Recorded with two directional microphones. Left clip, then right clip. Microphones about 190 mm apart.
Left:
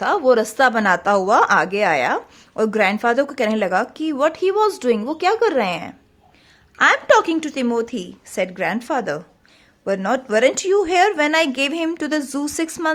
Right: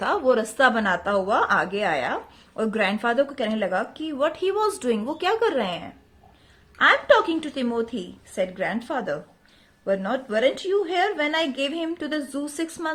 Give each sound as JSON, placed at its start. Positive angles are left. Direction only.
{"t": 0.0, "sound": "a woman's voice", "side_deg": 25}